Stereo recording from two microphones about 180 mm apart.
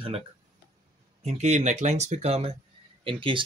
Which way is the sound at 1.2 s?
40° right (ahead or behind).